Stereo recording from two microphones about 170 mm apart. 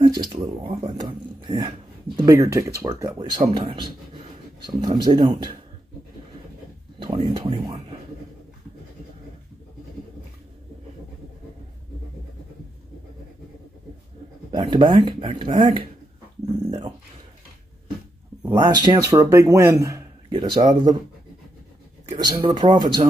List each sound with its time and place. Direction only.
0.0 s speech: 25° right (ahead or behind)
7.0 s speech: 30° right (ahead or behind)
14.5 s speech: 25° right (ahead or behind)
18.4 s a man's voice: 20° right (ahead or behind)
22.2 s speech: 25° right (ahead or behind)